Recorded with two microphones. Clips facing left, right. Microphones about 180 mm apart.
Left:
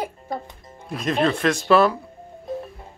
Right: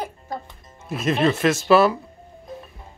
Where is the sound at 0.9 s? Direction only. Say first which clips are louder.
Right 1 dB; 5° right (ahead or behind).